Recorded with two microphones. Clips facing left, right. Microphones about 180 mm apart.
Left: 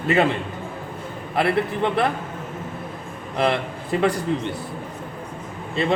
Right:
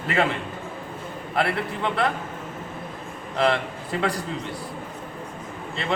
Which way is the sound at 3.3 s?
20° left (ahead or behind).